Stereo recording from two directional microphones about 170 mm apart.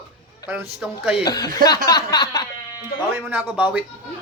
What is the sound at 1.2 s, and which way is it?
A man's voice, 25° left (ahead or behind).